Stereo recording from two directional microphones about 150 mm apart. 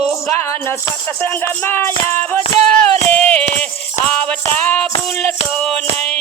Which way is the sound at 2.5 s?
40° right (ahead or behind).